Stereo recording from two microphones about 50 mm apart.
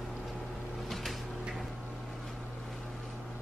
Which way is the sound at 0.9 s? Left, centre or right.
Centre.